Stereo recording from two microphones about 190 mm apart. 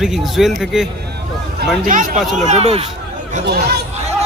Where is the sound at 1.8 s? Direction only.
45° right (ahead or behind).